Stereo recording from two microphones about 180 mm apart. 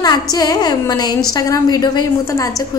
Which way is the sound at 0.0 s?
20° left (ahead or behind).